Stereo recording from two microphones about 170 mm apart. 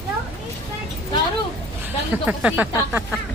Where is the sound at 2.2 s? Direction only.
10° right (ahead or behind).